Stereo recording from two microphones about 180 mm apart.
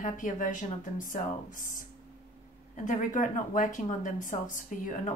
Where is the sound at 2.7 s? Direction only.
45° left (ahead or behind).